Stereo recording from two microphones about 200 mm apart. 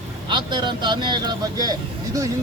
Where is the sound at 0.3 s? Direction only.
20° right (ahead or behind).